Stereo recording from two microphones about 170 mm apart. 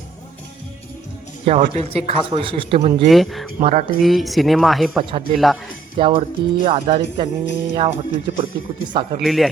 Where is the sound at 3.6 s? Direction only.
40° right (ahead or behind).